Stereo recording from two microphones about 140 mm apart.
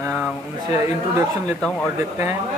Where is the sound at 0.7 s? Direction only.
15° right (ahead or behind).